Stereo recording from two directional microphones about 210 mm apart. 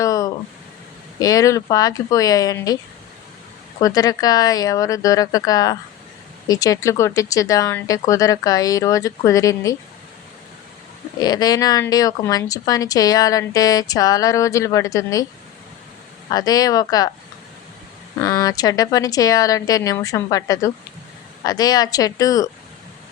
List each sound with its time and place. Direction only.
0.0 s a sound: 15° left (ahead or behind)
1.2 s speech: 15° left (ahead or behind)
3.8 s speech: 15° left (ahead or behind)
11.2 s speech: 20° left (ahead or behind)
16.3 s speech: 20° left (ahead or behind)
18.2 s speech: 15° left (ahead or behind)